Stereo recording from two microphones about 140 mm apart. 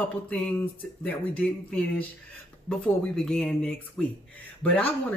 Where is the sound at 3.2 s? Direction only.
5° left (ahead or behind).